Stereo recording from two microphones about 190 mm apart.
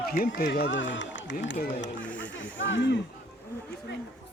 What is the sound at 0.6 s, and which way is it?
Speech, 75° left (ahead or behind).